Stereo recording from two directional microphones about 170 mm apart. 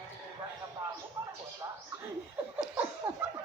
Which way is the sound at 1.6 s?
20° right (ahead or behind).